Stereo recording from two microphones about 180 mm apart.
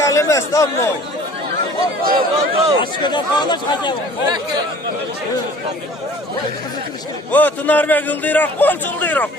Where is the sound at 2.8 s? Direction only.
25° left (ahead or behind).